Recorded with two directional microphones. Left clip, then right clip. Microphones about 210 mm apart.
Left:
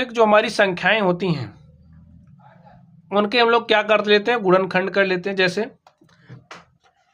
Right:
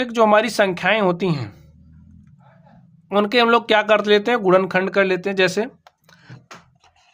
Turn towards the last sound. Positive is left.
turn(degrees=-40)  # may be behind; listen again after turning